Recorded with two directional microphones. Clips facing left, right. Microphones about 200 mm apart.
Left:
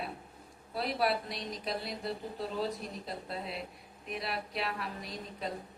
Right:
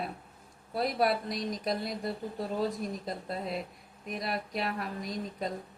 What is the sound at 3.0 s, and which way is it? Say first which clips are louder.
Speech: right 4 dB; 45° right (ahead or behind).